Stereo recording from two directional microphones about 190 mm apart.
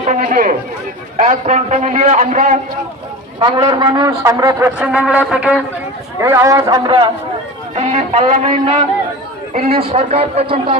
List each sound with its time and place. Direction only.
0.0 s a man's voice: 40° right (ahead or behind)
3.4 s speech: 25° right (ahead or behind)
4.8 s music: 5° right (ahead or behind)
6.1 s a man's voice: 15° right (ahead or behind)
7.8 s a man's voice: 35° right (ahead or behind)